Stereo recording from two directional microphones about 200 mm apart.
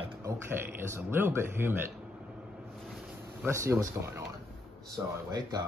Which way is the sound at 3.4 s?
15° right (ahead or behind).